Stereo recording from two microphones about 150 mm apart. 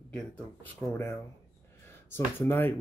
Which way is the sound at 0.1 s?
5° left (ahead or behind).